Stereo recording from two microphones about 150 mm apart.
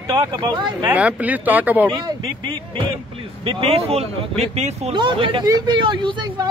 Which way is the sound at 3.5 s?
40° right (ahead or behind).